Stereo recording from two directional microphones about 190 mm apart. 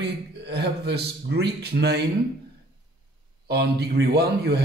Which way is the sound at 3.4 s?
60° right (ahead or behind).